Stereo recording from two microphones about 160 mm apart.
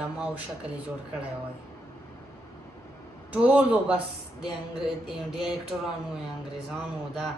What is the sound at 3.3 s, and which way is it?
Speech, 10° right (ahead or behind).